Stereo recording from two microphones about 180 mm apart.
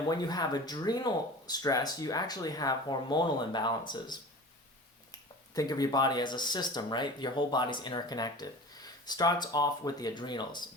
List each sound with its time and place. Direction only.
0.1 s speech: 20° left (ahead or behind)